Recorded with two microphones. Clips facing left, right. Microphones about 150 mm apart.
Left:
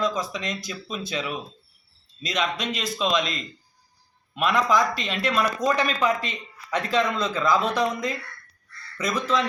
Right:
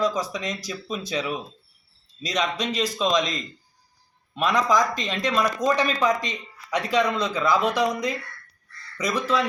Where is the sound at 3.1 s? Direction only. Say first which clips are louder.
Right 2 dB; 40° right (ahead or behind).